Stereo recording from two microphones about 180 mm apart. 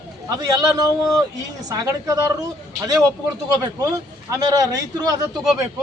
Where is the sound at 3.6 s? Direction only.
20° right (ahead or behind).